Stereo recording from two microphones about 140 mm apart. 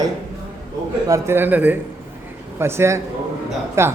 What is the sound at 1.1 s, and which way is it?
A man's voice, 15° right (ahead or behind).